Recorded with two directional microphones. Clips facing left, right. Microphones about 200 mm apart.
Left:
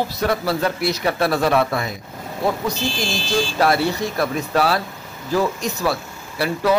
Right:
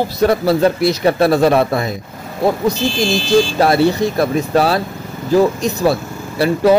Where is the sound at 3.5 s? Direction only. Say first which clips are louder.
Right 6 dB; 25° right (ahead or behind).